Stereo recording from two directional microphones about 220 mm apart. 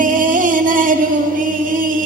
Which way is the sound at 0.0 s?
40° right (ahead or behind).